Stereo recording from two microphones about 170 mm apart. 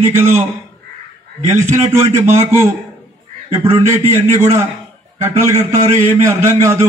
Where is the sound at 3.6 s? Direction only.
15° right (ahead or behind).